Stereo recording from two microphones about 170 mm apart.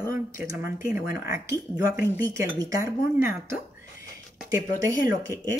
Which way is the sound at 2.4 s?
15° right (ahead or behind).